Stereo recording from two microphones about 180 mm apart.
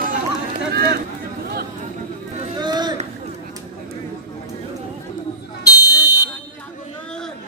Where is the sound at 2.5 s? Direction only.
25° right (ahead or behind).